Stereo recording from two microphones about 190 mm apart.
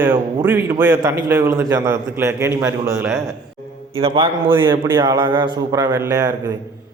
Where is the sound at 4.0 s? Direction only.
30° right (ahead or behind).